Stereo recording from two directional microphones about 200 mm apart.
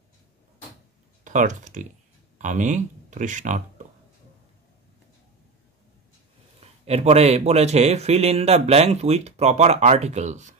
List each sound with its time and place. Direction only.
1.2 s speech: 40° right (ahead or behind)
6.6 s a man's voice: 30° right (ahead or behind)